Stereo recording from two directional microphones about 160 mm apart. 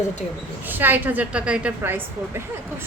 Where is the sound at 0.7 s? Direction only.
10° right (ahead or behind).